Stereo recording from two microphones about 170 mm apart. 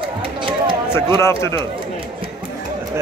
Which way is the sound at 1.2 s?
15° left (ahead or behind).